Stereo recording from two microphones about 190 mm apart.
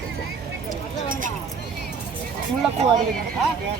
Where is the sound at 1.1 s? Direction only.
45° right (ahead or behind).